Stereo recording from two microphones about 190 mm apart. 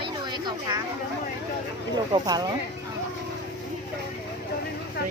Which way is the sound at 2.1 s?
20° right (ahead or behind).